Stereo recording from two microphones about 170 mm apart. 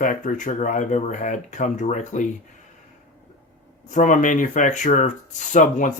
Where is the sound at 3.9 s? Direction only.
50° left (ahead or behind).